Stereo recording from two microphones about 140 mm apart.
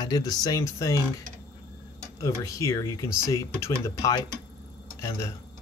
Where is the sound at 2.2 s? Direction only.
25° left (ahead or behind).